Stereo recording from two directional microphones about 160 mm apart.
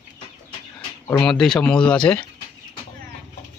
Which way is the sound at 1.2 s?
Centre (ahead or behind).